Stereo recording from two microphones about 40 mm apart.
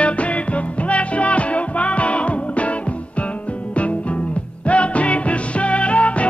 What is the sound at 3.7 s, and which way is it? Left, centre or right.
Music, left.